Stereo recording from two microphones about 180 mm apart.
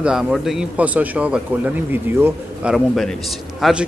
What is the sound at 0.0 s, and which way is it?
Speech, 5° right (ahead or behind).